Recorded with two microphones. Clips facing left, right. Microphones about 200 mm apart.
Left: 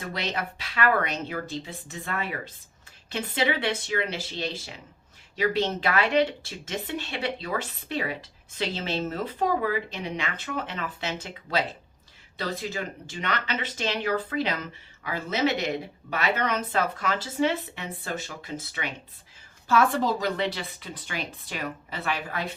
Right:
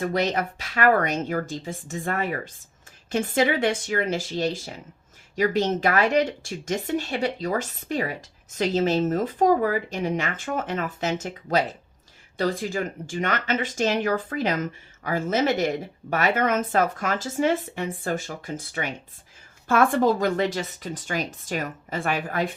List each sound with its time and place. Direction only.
0.0 s speech: 45° right (ahead or behind)